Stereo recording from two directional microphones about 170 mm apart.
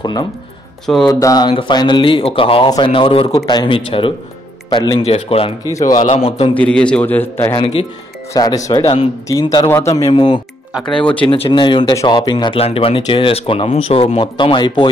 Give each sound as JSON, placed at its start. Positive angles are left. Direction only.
{"t": 0.0, "sound": "speech", "side_deg": 25}
{"t": 5.6, "sound": "speech", "side_deg": 20}
{"t": 5.9, "sound": "speech", "side_deg": 40}
{"t": 6.5, "sound": "a man's voice", "side_deg": 5}
{"t": 8.8, "sound": "speech", "side_deg": 35}
{"t": 10.7, "sound": "speech", "side_deg": 5}
{"t": 11.2, "sound": "speech", "side_deg": 30}